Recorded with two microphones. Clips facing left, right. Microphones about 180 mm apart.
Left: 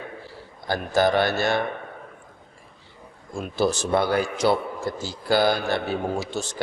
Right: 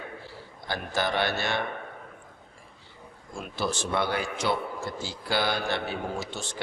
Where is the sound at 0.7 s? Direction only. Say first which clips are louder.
Left 8 dB; 45° left (ahead or behind).